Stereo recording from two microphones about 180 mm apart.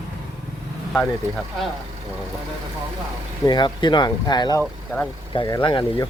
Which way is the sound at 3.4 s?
25° left (ahead or behind).